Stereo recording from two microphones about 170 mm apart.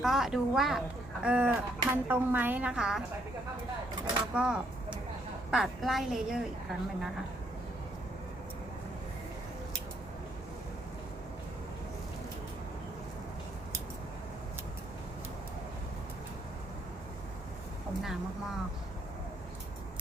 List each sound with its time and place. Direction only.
0.0 s a woman's voice: centre (ahead or behind)
4.4 s a woman's voice: 5° right (ahead or behind)